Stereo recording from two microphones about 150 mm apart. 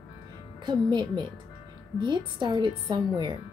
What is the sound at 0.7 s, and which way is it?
A woman's voice, 30° right (ahead or behind).